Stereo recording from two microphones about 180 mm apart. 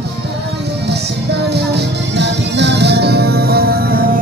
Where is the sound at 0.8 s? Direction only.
65° right (ahead or behind).